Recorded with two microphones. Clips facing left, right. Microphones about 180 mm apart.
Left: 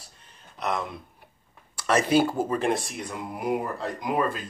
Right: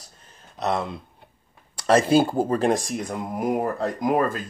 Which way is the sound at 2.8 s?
45° right (ahead or behind).